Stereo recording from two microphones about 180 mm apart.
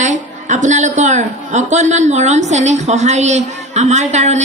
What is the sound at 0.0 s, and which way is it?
A woman's voice, 40° right (ahead or behind).